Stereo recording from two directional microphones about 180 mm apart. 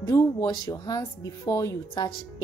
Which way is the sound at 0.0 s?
20° left (ahead or behind).